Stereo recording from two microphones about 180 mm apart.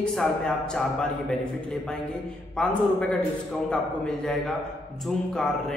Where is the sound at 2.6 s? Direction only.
5° left (ahead or behind).